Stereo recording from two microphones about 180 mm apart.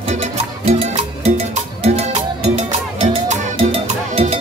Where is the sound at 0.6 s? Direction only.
35° right (ahead or behind).